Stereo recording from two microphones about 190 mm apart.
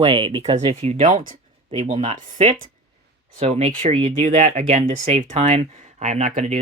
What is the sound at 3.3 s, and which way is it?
Speech, 30° right (ahead or behind).